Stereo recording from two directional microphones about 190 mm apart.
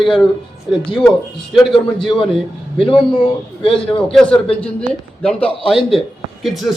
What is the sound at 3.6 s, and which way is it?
Speech, 30° left (ahead or behind).